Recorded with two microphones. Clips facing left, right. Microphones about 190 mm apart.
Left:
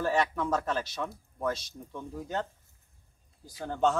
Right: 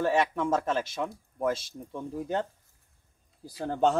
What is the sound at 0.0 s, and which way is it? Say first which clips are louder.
Speech: right 2 dB; 25° right (ahead or behind).